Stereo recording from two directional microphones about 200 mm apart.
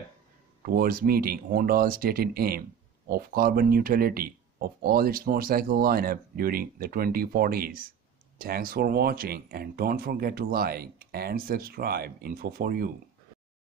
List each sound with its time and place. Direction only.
0.6 s speech: 45° right (ahead or behind)